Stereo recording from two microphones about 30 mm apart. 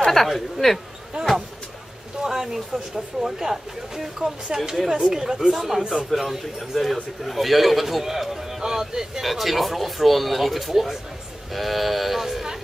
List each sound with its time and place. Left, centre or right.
0.1 s a woman's voice: centre
1.1 s a sound: right
2.2 s speech: centre
4.5 s speech: right
5.5 s speech: centre
5.8 s speech: right
6.0 s a man's voice: centre
8.6 s speech: centre
9.2 s speech: centre